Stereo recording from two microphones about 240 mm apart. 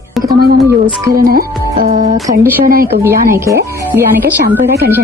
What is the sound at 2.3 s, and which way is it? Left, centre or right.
Music, right.